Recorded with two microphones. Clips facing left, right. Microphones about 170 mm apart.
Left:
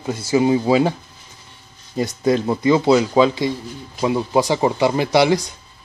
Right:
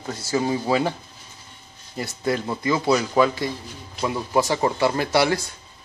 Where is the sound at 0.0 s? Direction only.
15° left (ahead or behind).